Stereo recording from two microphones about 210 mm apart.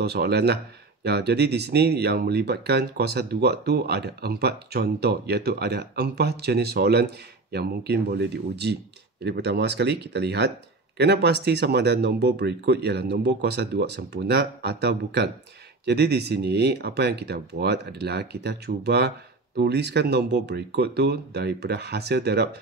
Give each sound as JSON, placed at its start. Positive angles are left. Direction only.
{"t": 0.0, "sound": "speech", "side_deg": -50}